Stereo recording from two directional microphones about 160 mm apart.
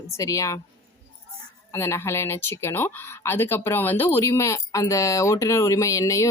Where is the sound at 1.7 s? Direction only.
15° left (ahead or behind).